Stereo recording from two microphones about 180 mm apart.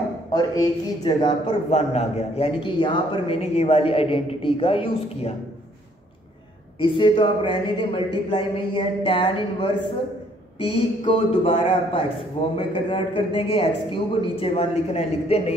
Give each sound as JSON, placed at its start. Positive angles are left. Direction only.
{"t": 0.3, "sound": "speech", "side_deg": 25}
{"t": 1.7, "sound": "a man's voice", "side_deg": 35}
{"t": 6.8, "sound": "a man's voice", "side_deg": 30}